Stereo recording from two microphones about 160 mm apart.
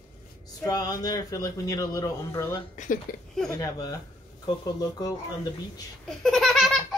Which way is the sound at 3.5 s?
20° left (ahead or behind).